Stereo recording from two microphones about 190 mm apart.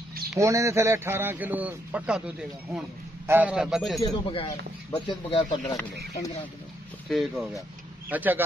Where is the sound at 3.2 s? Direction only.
10° right (ahead or behind).